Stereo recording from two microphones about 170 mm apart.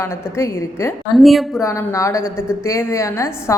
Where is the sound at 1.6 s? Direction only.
20° left (ahead or behind).